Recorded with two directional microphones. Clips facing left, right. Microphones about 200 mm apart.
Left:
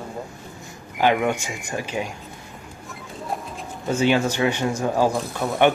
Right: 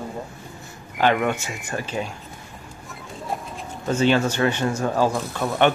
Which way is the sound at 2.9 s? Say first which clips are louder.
Even; centre (ahead or behind).